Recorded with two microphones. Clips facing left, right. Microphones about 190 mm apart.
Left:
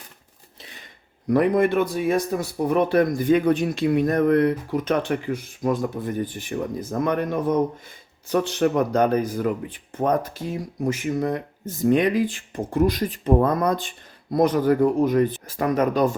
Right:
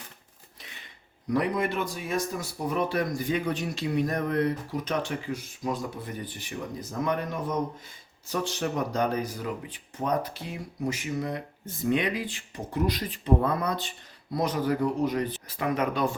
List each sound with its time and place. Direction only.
1.3 s speech: 55° left (ahead or behind)